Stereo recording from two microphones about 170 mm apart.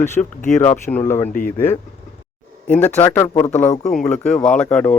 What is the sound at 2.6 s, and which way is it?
Speech, 10° left (ahead or behind).